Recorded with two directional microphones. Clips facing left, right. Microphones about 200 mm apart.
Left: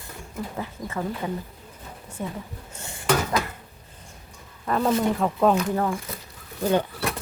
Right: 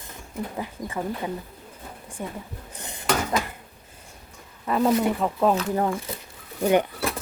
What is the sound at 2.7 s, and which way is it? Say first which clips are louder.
Dishes: right 1 dB; 20° right (ahead or behind).